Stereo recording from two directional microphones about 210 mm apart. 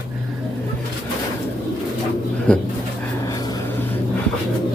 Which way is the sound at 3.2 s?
15° left (ahead or behind).